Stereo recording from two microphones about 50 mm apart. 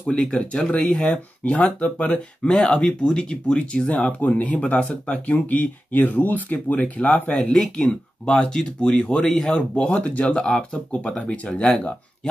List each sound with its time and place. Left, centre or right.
0.4 s speech: left